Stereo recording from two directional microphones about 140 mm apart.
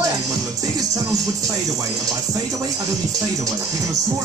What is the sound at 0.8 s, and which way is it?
Music, 25° right (ahead or behind).